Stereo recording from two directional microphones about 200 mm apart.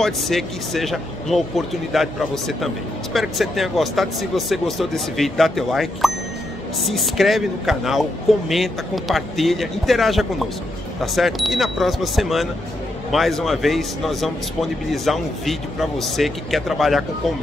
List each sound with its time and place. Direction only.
0.0 s speech: centre (ahead or behind)